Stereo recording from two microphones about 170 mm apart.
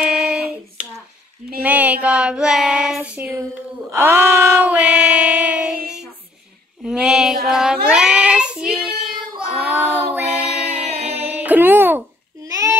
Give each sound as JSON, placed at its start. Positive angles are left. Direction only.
{"t": 0.0, "sound": "hands", "side_deg": -5}
{"t": 1.6, "sound": "child singing", "side_deg": -10}
{"t": 6.8, "sound": "child singing", "side_deg": -5}
{"t": 9.5, "sound": "female singing", "side_deg": -10}
{"t": 10.9, "sound": "a sound", "side_deg": -40}
{"t": 11.3, "sound": "music", "side_deg": -10}
{"t": 12.4, "sound": "child singing", "side_deg": -20}